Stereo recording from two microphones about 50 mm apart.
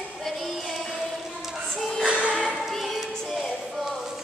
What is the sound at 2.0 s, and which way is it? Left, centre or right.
Music, centre.